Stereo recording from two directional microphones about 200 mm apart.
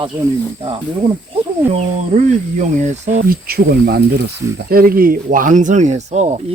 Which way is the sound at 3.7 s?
50° right (ahead or behind).